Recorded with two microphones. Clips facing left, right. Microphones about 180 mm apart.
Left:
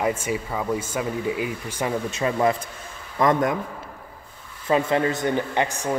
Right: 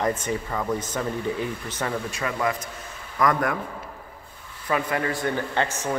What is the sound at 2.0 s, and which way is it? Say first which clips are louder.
A man's voice: left 5 dB; 25° left (ahead or behind).